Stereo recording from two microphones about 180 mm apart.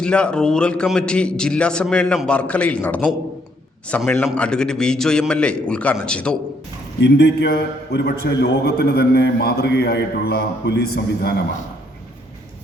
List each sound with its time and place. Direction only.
0.0 s a man's voice: 5° left (ahead or behind)
7.0 s a man's voice: 70° left (ahead or behind)